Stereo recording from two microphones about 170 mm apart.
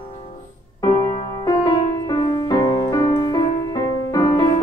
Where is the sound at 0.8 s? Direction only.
25° left (ahead or behind).